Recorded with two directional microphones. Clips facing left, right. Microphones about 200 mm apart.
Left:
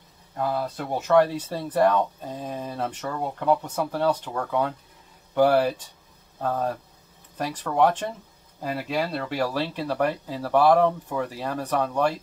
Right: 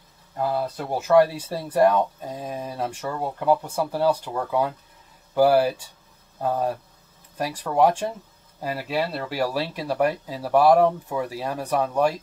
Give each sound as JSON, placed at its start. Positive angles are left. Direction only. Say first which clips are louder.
{"t": 0.4, "sound": "speech", "louder": "right 2 dB", "side_deg": -5}